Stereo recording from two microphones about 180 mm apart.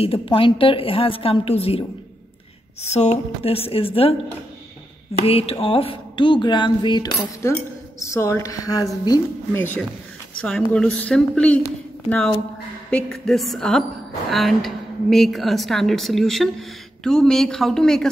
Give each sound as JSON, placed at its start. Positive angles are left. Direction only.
{"t": 0.0, "sound": "a woman's voice", "side_deg": 30}
{"t": 2.9, "sound": "a woman's voice", "side_deg": 40}
{"t": 5.2, "sound": "a woman's voice", "side_deg": 30}
{"t": 12.9, "sound": "a woman's voice", "side_deg": 0}